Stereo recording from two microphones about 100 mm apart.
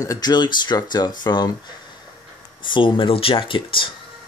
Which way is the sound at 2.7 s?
55° left (ahead or behind).